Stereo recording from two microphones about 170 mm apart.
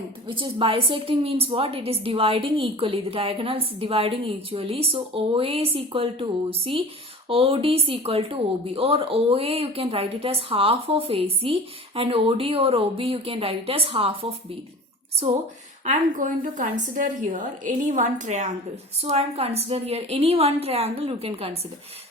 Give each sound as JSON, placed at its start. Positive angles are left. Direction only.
{"t": 0.3, "sound": "speech", "side_deg": -30}
{"t": 15.8, "sound": "a woman's voice", "side_deg": -45}